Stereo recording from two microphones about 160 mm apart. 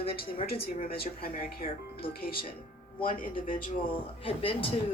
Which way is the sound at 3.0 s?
60° left (ahead or behind).